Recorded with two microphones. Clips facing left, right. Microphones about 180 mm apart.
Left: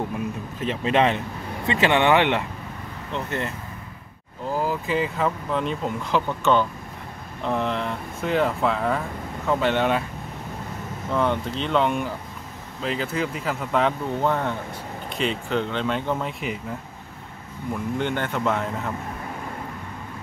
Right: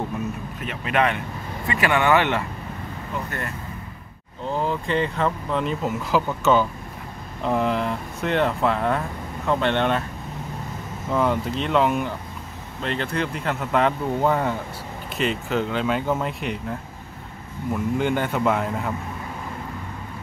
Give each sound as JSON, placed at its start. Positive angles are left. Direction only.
{"t": 0.6, "sound": "speech", "side_deg": 30}
{"t": 4.5, "sound": "speech", "side_deg": 5}
{"t": 11.1, "sound": "speech", "side_deg": -5}
{"t": 17.9, "sound": "speech", "side_deg": -10}